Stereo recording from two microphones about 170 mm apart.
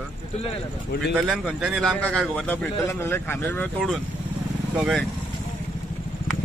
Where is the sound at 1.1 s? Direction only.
5° right (ahead or behind).